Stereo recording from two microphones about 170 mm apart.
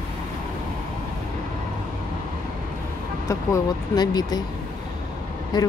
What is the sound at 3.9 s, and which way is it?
Speech, 25° left (ahead or behind).